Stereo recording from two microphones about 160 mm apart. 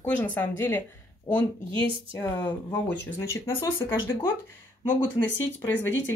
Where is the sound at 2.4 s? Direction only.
30° left (ahead or behind).